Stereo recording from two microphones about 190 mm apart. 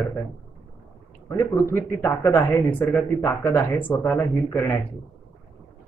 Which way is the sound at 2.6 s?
Centre (ahead or behind).